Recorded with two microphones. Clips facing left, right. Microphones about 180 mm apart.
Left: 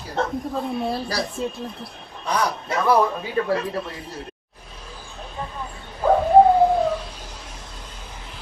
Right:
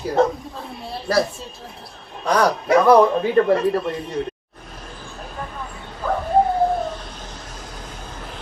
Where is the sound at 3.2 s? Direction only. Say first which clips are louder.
Right 7 dB; 55° right (ahead or behind).